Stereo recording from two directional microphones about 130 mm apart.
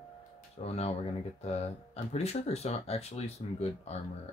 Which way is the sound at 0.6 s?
55° left (ahead or behind).